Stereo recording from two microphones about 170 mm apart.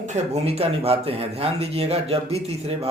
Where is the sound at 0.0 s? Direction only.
45° right (ahead or behind).